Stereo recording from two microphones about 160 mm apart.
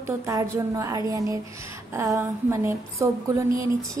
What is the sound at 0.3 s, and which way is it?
A woman's voice, 20° right (ahead or behind).